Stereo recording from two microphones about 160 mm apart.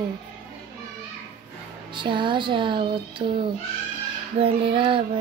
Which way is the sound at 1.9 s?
30° right (ahead or behind).